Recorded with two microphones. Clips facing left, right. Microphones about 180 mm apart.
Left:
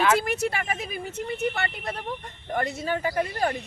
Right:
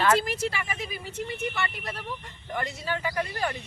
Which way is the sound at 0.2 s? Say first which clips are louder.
Left 3 dB; 60° left (ahead or behind).